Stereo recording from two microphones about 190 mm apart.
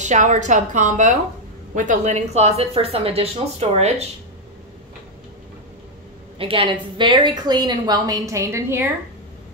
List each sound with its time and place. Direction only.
0.0 s a woman's voice: 40° right (ahead or behind)
6.3 s a woman's voice: 30° right (ahead or behind); by 8.9 s 10° right (ahead or behind)